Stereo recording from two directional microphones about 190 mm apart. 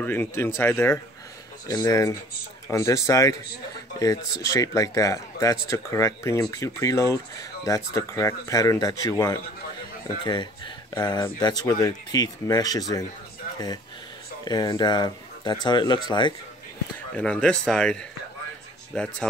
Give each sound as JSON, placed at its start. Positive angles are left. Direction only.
{"t": 0.0, "sound": "speech", "side_deg": 10}
{"t": 14.4, "sound": "speech", "side_deg": 20}
{"t": 17.1, "sound": "speech", "side_deg": 5}
{"t": 18.9, "sound": "speech", "side_deg": 5}